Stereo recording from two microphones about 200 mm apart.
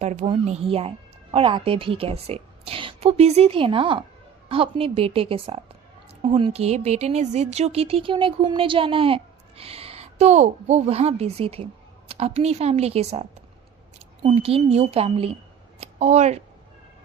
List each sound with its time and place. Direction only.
0.0 s speech: 35° right (ahead or behind)